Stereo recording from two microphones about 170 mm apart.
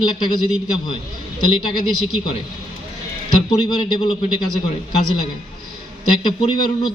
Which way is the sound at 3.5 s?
30° left (ahead or behind).